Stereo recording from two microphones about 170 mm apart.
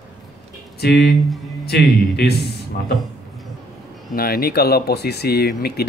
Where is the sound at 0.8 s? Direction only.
70° left (ahead or behind).